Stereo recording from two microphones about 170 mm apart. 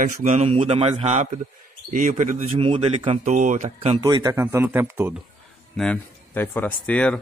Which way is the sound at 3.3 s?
45° right (ahead or behind).